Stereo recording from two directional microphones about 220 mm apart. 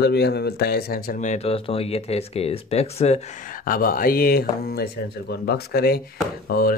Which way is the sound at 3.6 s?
40° left (ahead or behind).